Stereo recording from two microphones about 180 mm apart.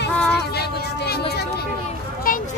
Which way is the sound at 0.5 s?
60° left (ahead or behind).